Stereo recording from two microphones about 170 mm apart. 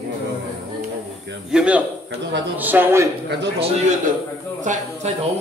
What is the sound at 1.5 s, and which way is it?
A man's voice, 5° right (ahead or behind).